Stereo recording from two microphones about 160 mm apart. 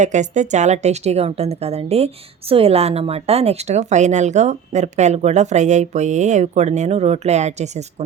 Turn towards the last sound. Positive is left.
turn(degrees=-45)  # may be behind; listen again after turning